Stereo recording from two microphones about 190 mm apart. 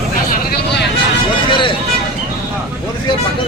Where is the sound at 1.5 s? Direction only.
25° left (ahead or behind).